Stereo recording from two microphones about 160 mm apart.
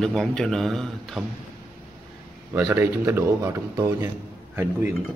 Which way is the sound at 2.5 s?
15° right (ahead or behind).